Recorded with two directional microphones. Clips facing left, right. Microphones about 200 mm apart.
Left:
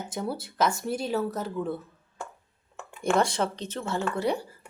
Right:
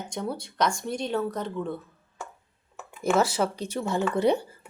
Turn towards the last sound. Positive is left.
turn(degrees=-20)  # may be behind; listen again after turning